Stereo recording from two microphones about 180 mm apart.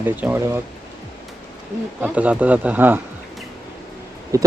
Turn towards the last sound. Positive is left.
turn(degrees=-15)  # may be behind; listen again after turning